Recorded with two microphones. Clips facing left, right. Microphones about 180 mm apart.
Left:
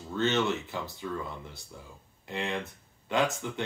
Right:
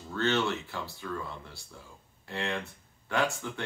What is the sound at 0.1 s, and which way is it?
Speech, 20° left (ahead or behind).